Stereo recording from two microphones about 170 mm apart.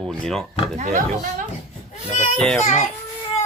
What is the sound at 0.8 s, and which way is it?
Speech, 45° right (ahead or behind).